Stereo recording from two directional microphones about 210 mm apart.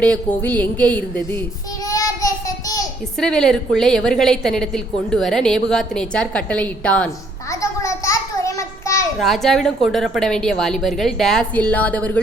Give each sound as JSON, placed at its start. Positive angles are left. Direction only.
{"t": 0.4, "sound": "a woman's voice", "side_deg": 10}
{"t": 1.4, "sound": "child singing", "side_deg": 15}
{"t": 3.2, "sound": "a woman's voice", "side_deg": 5}
{"t": 7.5, "sound": "a sound", "side_deg": 15}
{"t": 9.1, "sound": "a woman's voice", "side_deg": 0}